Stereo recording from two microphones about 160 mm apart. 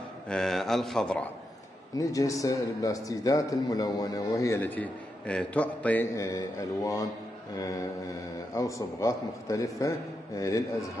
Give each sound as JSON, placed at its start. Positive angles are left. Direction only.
{"t": 0.3, "sound": "a man's voice", "side_deg": 5}
{"t": 2.0, "sound": "a man's voice", "side_deg": 20}
{"t": 8.5, "sound": "a man's voice", "side_deg": 20}